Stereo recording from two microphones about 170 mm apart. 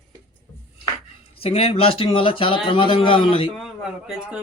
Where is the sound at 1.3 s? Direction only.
35° left (ahead or behind).